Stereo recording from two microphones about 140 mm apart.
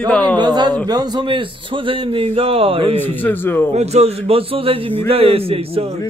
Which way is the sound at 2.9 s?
15° left (ahead or behind).